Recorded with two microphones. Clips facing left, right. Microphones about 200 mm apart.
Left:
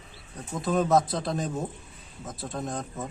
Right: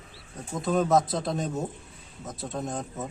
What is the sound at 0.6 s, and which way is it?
A man's voice, centre (ahead or behind).